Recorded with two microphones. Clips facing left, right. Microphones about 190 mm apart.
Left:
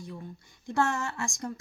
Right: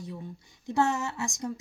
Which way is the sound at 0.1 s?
20° right (ahead or behind).